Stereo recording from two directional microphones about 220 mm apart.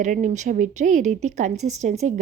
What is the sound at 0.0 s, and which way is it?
A woman's voice, 35° right (ahead or behind).